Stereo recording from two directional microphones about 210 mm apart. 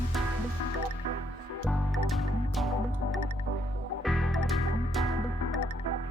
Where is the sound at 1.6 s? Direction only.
Centre (ahead or behind).